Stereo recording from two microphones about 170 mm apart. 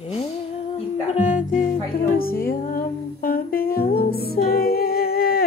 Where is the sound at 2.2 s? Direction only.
60° left (ahead or behind).